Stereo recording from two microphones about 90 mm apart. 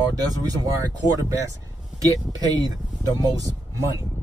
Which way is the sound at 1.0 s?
40° right (ahead or behind).